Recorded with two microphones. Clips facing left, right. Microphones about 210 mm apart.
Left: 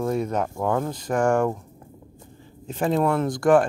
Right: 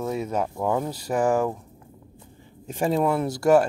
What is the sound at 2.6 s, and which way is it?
Speech, 10° right (ahead or behind).